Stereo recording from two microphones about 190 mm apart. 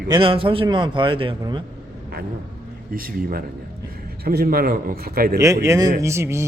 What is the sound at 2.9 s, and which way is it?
A man's voice, 50° right (ahead or behind).